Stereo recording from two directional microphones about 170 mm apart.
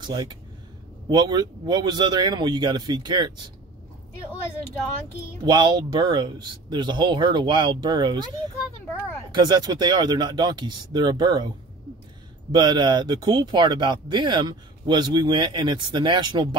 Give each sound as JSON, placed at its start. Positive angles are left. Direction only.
{"t": 0.0, "sound": "speech", "side_deg": -25}
{"t": 5.4, "sound": "speech", "side_deg": -25}
{"t": 9.3, "sound": "speech", "side_deg": -25}
{"t": 12.5, "sound": "speech", "side_deg": -25}